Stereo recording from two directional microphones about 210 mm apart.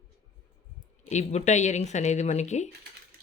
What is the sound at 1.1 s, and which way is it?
Speech, 35° left (ahead or behind).